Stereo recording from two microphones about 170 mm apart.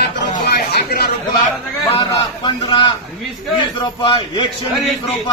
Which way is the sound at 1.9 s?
25° left (ahead or behind).